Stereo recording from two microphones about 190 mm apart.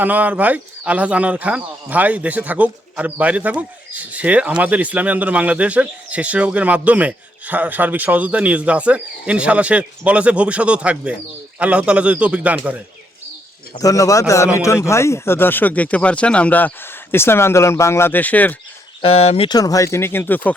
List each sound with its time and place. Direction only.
0.0 s speech: 10° right (ahead or behind)
13.7 s speech: 20° left (ahead or behind)
19.0 s speech: 30° left (ahead or behind); by 20.6 s 10° left (ahead or behind)